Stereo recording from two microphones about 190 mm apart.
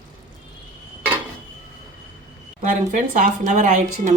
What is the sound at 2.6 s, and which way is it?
Speech, 45° right (ahead or behind).